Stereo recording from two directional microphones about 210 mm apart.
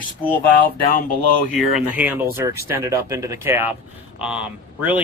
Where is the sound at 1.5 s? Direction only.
5° right (ahead or behind).